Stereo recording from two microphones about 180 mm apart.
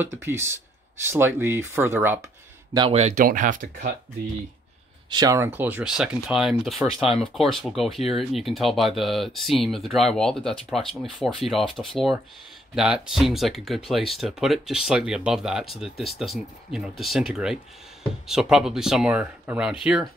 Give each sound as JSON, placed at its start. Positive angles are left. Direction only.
{"t": 0.0, "sound": "speech", "side_deg": -15}
{"t": 2.9, "sound": "speech", "side_deg": -35}
{"t": 3.2, "sound": "speech", "side_deg": -50}
{"t": 5.1, "sound": "speech", "side_deg": -20}
{"t": 7.0, "sound": "speech", "side_deg": 30}
{"t": 7.3, "sound": "speech", "side_deg": 0}